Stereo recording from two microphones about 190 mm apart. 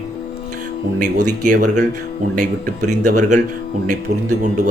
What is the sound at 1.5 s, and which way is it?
A man's voice, 45° right (ahead or behind).